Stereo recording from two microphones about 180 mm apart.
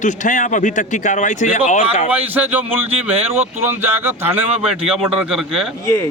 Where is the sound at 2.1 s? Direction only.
10° right (ahead or behind).